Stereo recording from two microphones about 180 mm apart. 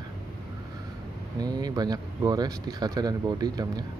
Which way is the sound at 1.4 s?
20° right (ahead or behind).